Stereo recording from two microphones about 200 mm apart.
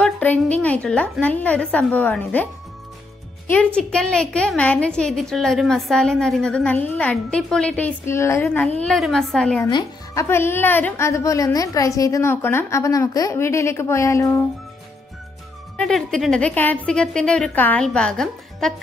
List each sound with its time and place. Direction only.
0.0 s a woman's voice: 5° left (ahead or behind)
9.7 s speech: 20° left (ahead or behind)
10.2 s a woman's voice: 10° left (ahead or behind)
15.8 s a woman's voice: centre (ahead or behind)